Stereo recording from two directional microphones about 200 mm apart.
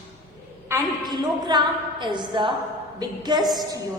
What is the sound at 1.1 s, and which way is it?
A woman's voice, 20° right (ahead or behind).